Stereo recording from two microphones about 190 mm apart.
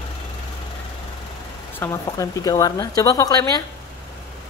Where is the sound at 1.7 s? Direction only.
15° left (ahead or behind).